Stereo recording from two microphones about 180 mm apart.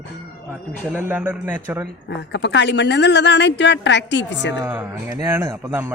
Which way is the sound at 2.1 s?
75° left (ahead or behind).